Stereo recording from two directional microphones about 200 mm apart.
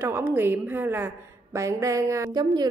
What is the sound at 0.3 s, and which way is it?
A woman's voice, 10° right (ahead or behind).